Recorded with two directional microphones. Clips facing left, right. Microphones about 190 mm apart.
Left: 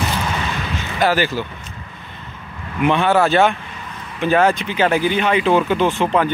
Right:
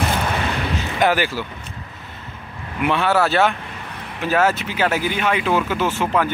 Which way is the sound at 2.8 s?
5° right (ahead or behind).